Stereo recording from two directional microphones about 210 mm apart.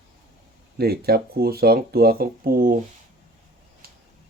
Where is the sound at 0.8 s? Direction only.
50° right (ahead or behind).